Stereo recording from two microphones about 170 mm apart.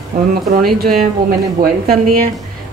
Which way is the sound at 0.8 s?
60° right (ahead or behind).